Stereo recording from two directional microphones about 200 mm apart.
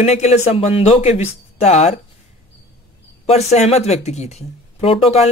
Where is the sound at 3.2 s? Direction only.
35° left (ahead or behind).